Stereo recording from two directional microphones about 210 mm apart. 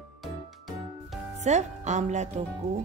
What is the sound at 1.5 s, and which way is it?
Speech, 35° right (ahead or behind).